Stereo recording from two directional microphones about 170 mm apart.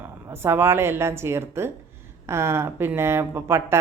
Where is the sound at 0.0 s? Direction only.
15° right (ahead or behind).